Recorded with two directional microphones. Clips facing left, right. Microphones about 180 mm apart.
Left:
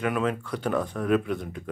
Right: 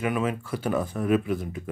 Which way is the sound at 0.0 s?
5° right (ahead or behind).